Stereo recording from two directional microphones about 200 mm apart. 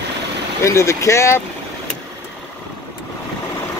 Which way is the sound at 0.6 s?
15° left (ahead or behind).